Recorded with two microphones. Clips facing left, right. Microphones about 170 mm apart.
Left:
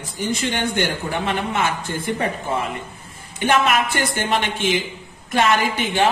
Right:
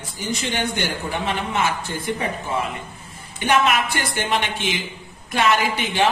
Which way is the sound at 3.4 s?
50° left (ahead or behind).